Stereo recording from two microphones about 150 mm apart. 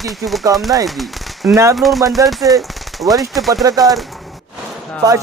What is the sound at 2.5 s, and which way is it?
Speech, 20° right (ahead or behind).